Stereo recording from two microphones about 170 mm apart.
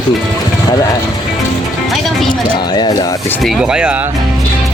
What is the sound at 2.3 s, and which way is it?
Speech, 25° left (ahead or behind).